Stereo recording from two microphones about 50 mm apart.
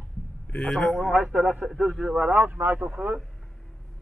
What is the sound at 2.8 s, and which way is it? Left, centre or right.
Speech, centre.